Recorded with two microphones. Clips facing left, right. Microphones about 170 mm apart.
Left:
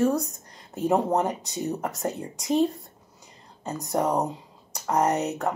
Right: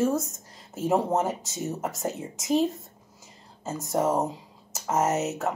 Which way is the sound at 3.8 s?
Centre (ahead or behind).